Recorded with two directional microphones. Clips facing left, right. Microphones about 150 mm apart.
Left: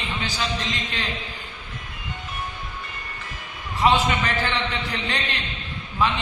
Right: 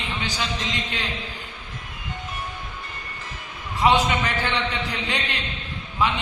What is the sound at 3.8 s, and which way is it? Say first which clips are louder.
Speech: even; 15° right (ahead or behind).